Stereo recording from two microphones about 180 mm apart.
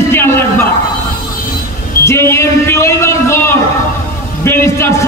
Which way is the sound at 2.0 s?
15° left (ahead or behind).